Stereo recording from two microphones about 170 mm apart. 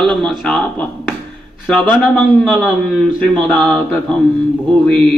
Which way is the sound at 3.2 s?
5° left (ahead or behind).